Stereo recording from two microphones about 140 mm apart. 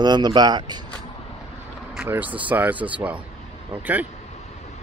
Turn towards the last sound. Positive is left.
turn(degrees=-10)  # may be behind; listen again after turning